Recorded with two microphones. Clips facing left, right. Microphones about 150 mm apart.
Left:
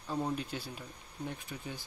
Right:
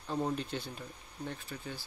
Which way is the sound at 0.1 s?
5° left (ahead or behind).